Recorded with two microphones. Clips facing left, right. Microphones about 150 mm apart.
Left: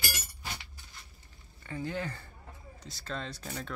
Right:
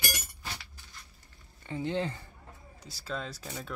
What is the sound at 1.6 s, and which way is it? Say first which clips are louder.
Speech: right 4 dB; 20° right (ahead or behind).